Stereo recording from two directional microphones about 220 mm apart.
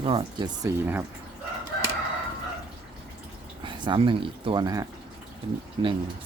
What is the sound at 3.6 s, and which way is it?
Speech, 20° right (ahead or behind).